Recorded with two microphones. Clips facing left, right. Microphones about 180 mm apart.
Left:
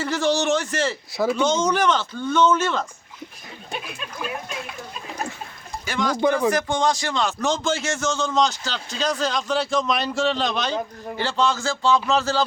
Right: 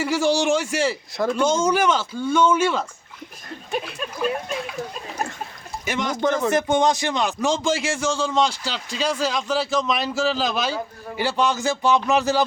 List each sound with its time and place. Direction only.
0.0 s a sound: 10° right (ahead or behind)
1.1 s speech: 5° left (ahead or behind)
1.4 s a man's voice: 10° right (ahead or behind)
5.8 s speech: 20° right (ahead or behind)
6.2 s speech: 10° left (ahead or behind)
6.5 s a man's voice: 20° right (ahead or behind)